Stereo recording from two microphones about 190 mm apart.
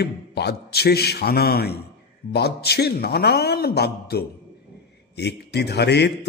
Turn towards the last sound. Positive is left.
turn(degrees=60)  # may be behind; listen again after turning